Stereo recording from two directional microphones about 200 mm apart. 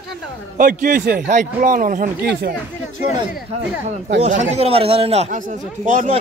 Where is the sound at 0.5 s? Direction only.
45° right (ahead or behind).